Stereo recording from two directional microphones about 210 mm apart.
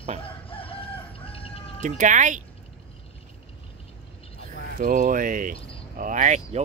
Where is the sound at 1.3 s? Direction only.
25° left (ahead or behind).